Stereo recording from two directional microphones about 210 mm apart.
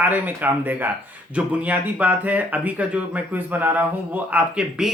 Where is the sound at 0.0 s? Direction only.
10° right (ahead or behind).